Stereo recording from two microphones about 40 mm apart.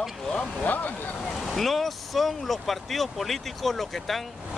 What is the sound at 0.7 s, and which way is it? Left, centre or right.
Speech, left.